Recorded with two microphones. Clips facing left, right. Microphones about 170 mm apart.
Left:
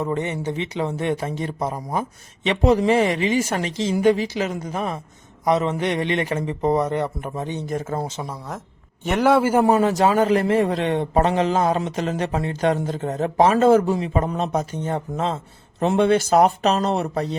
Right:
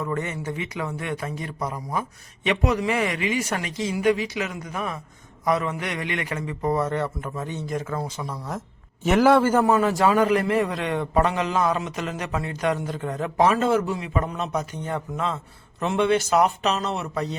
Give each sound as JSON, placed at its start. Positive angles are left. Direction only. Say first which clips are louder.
{"t": 0.0, "sound": "a man's voice", "louder": "left 4 dB", "side_deg": 20}
{"t": 8.3, "sound": "speech", "louder": "even", "side_deg": 0}
{"t": 9.4, "sound": "a man's voice", "louder": "left 2 dB", "side_deg": 10}
{"t": 13.4, "sound": "a man's voice", "louder": "left 5 dB", "side_deg": 40}